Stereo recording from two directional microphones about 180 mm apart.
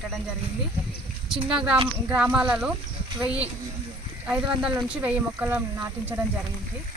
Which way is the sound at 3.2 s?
35° right (ahead or behind).